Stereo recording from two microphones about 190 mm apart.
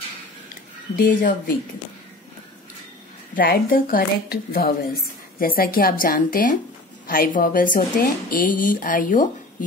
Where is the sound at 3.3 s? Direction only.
50° left (ahead or behind).